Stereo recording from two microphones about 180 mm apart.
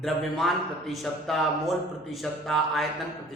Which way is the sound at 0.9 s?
Centre (ahead or behind).